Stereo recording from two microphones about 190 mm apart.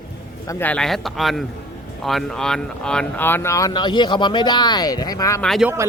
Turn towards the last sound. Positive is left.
turn(degrees=0)  # may be behind; listen again after turning